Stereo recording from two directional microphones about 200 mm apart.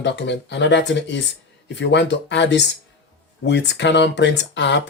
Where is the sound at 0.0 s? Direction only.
60° left (ahead or behind).